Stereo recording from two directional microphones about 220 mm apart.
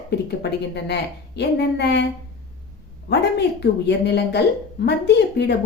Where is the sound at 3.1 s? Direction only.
50° left (ahead or behind).